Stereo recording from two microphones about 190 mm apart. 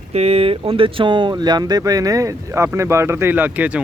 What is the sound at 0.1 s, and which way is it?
Speech, 35° right (ahead or behind).